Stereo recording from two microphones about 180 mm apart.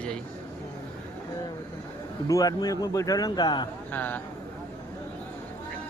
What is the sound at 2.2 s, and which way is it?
A man's voice, 20° left (ahead or behind).